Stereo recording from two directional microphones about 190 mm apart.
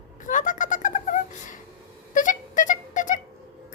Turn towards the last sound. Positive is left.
turn(degrees=40)  # may be behind; listen again after turning